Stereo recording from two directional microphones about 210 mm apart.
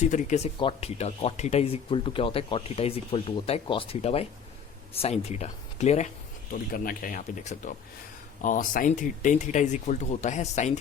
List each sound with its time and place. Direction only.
0.0 s speech: 35° left (ahead or behind)